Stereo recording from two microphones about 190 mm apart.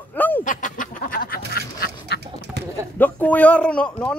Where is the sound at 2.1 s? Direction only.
60° left (ahead or behind).